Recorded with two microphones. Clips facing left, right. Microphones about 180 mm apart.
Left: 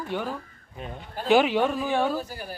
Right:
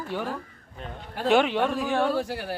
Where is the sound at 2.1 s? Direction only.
80° right.